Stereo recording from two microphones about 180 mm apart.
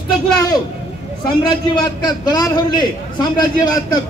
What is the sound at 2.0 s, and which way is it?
A man's voice, 20° left (ahead or behind).